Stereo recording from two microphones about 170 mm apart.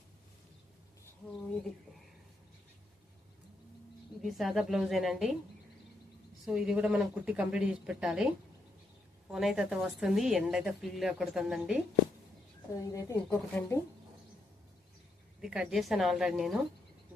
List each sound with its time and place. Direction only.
4.2 s a woman's voice: centre (ahead or behind)
6.4 s a woman's voice: 5° right (ahead or behind)
9.3 s a woman's voice: centre (ahead or behind)
12.8 s speech: 20° left (ahead or behind)
15.4 s a woman's voice: 5° right (ahead or behind)